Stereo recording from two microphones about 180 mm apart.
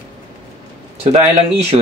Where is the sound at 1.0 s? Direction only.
35° right (ahead or behind).